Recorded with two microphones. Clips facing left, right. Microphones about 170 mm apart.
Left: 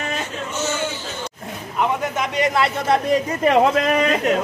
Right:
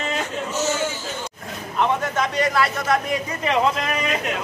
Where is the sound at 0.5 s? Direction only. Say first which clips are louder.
Right 1 dB; 40° right (ahead or behind).